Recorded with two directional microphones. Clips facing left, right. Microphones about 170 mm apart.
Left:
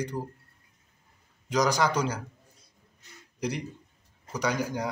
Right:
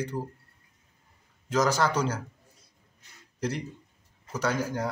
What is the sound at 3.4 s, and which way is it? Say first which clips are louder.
Speech: even; 15° left (ahead or behind).